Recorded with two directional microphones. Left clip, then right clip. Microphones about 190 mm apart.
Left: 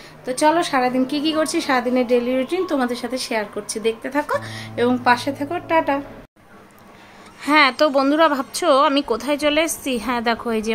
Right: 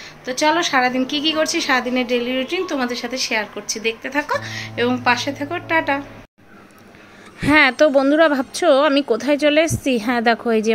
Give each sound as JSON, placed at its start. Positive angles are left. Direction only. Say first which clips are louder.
{"t": 0.2, "sound": "a woman's voice", "louder": "even", "side_deg": 10}
{"t": 7.3, "sound": "speech", "louder": "right 2 dB", "side_deg": -10}